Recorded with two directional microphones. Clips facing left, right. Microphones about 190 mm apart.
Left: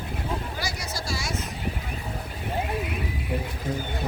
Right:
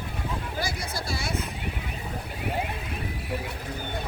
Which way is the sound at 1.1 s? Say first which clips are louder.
Left 1 dB; 60° right (ahead or behind).